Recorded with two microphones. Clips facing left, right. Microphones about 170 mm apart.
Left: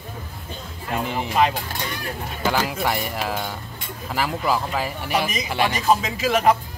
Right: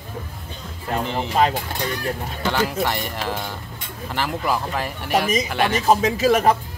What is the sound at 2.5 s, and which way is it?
Speech, 5° left (ahead or behind).